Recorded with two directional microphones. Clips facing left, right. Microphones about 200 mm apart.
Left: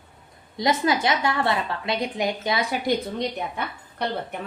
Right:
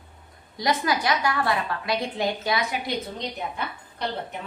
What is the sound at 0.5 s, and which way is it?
A woman's voice, 25° left (ahead or behind).